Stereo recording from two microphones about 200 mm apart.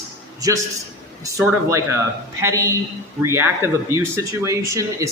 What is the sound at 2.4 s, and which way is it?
Speech, 15° right (ahead or behind).